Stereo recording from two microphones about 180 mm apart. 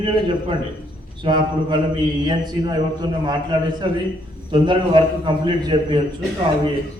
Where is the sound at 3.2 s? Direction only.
25° right (ahead or behind).